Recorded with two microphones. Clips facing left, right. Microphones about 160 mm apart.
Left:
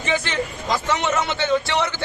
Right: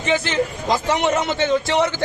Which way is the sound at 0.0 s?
35° right (ahead or behind).